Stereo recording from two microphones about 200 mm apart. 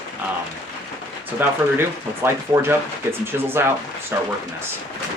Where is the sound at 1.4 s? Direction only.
10° right (ahead or behind).